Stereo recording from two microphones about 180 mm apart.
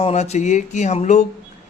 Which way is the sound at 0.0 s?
35° left (ahead or behind).